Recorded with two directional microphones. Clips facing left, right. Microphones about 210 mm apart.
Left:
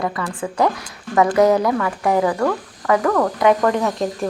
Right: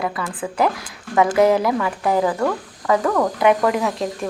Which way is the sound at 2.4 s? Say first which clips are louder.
Left 1 dB; 5° right (ahead or behind).